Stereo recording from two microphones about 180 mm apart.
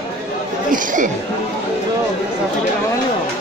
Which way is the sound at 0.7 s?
45° right (ahead or behind).